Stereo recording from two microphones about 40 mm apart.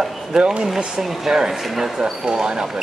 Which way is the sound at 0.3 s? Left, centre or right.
Centre.